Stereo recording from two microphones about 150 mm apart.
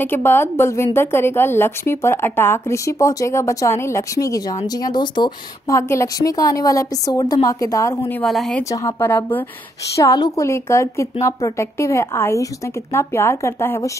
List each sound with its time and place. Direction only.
0.0 s a woman's voice: 15° left (ahead or behind)
8.1 s speech: 5° left (ahead or behind)
8.6 s a woman's voice: 20° left (ahead or behind)
9.9 s a woman's voice: 25° left (ahead or behind)